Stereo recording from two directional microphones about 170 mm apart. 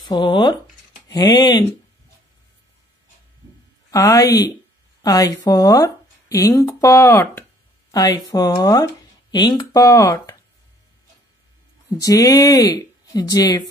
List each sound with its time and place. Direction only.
0.1 s speech: 25° left (ahead or behind)
3.9 s speech: 20° left (ahead or behind)
12.0 s speech: 20° left (ahead or behind)